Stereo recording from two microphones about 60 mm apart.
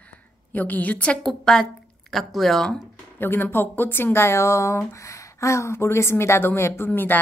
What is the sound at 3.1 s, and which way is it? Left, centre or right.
Speech, left.